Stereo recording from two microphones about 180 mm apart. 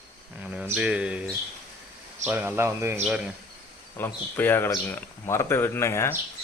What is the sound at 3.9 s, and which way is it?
Speech, 10° left (ahead or behind).